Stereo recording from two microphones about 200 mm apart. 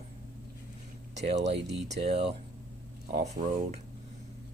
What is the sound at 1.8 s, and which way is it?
Speech, 35° right (ahead or behind).